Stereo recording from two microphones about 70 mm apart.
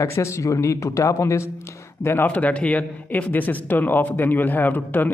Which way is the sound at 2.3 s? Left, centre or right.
Left.